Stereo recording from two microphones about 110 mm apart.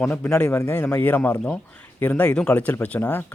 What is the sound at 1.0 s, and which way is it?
Speech, 15° left (ahead or behind).